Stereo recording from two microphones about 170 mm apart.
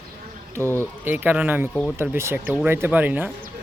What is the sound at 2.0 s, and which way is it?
Speech, 15° right (ahead or behind).